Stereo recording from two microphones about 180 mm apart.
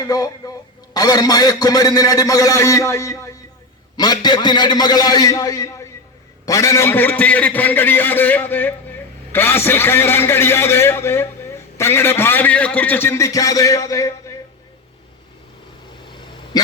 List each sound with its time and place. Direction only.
0.0 s a man's voice: 20° left (ahead or behind)